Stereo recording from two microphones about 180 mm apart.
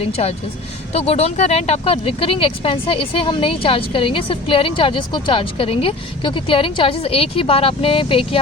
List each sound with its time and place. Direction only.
0.0 s speech: 35° left (ahead or behind)